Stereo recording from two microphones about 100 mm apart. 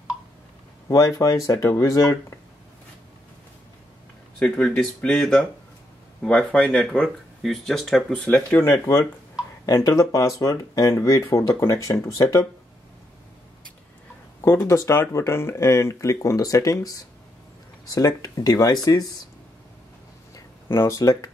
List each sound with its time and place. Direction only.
0.8 s speech: 35° left (ahead or behind)
4.4 s speech: 10° left (ahead or behind)
8.3 s speech: 20° left (ahead or behind)
9.7 s speech: 30° left (ahead or behind)
14.4 s speech: 25° left (ahead or behind)
20.3 s a sound: 25° left (ahead or behind)